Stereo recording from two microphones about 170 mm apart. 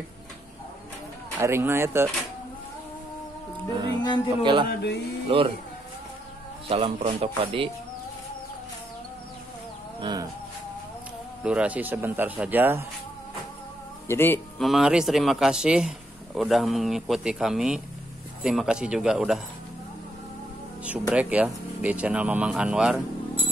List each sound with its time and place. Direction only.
1.4 s speech: 15° right (ahead or behind)
4.0 s a woman's voice: 25° left (ahead or behind)
4.6 s speech: 80° left
5.3 s speech: 35° right (ahead or behind)
6.7 s speech: 35° right (ahead or behind)
9.9 s speech: 25° right (ahead or behind)
11.4 s speech: 10° right (ahead or behind)
14.0 s speech: 15° left (ahead or behind)
14.6 s speech: centre (ahead or behind)
20.8 s speech: 5° right (ahead or behind)